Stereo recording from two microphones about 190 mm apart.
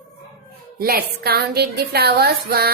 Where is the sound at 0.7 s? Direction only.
55° right (ahead or behind).